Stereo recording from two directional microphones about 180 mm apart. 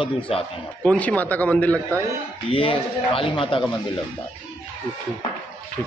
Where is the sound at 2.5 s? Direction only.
30° left (ahead or behind).